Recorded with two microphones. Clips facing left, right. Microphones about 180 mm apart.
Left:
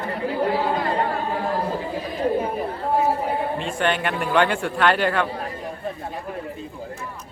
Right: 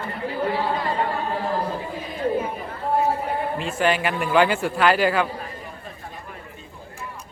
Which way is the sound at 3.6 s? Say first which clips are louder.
Right 1 dB; 5° right (ahead or behind).